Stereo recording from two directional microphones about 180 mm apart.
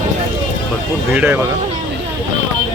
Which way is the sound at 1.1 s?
10° right (ahead or behind).